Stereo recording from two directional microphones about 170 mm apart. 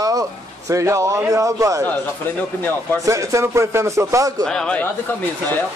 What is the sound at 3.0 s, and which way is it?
Speech, 20° right (ahead or behind).